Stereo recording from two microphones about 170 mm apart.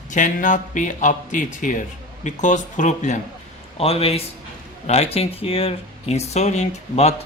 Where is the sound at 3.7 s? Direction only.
35° left (ahead or behind).